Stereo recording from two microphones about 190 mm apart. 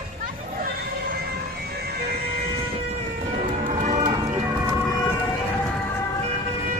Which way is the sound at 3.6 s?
40° right (ahead or behind).